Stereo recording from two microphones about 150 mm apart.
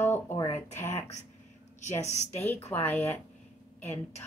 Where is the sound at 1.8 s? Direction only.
50° left (ahead or behind).